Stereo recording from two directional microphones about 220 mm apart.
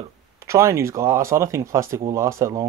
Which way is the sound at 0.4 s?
10° right (ahead or behind).